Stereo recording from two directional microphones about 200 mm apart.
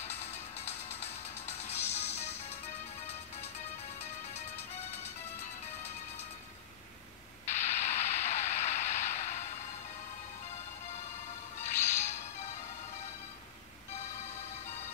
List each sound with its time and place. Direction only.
0.0 s music: 35° left (ahead or behind)
7.6 s a sound: 35° left (ahead or behind)
11.6 s whip: 35° left (ahead or behind)